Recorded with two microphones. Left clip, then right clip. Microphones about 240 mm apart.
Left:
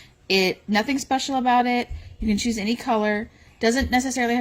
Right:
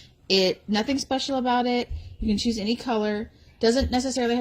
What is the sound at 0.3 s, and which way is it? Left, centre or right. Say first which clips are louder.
Speech: left 1 dB; left.